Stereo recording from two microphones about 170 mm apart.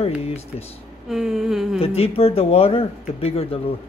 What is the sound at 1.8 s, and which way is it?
Speech, 35° left (ahead or behind).